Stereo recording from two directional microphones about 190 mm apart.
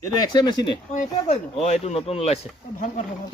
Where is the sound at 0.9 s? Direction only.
35° left (ahead or behind).